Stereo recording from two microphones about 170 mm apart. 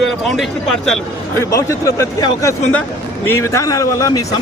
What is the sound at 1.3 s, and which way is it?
Speech, 15° left (ahead or behind).